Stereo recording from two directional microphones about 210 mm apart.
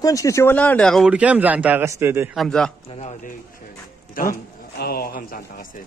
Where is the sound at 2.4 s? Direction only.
5° left (ahead or behind).